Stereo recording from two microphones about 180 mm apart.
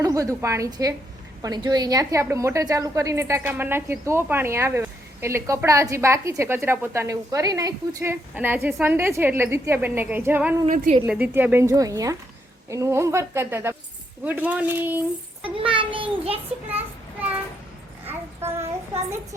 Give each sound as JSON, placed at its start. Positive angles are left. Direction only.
{"t": 0.0, "sound": "a woman's voice", "side_deg": -20}
{"t": 15.4, "sound": "a woman's voice", "side_deg": -30}
{"t": 16.5, "sound": "a child's voice", "side_deg": -5}
{"t": 18.0, "sound": "a sound", "side_deg": -10}